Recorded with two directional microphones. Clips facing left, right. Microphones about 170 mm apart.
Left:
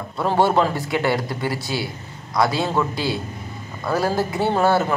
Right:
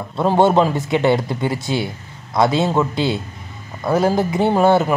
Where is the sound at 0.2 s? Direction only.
20° right (ahead or behind).